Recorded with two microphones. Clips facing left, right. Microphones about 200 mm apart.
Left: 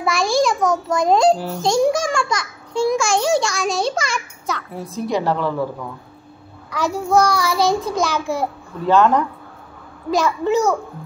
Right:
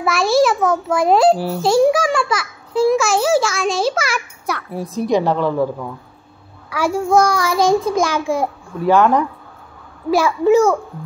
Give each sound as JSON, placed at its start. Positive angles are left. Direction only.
{"t": 0.0, "sound": "a child's voice", "side_deg": -5}
{"t": 6.7, "sound": "a child's voice", "side_deg": -10}